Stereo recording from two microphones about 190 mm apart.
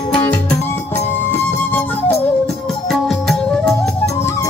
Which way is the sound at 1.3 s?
10° left (ahead or behind).